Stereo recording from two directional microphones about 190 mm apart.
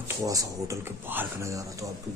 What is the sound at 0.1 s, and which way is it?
Speech, 20° right (ahead or behind).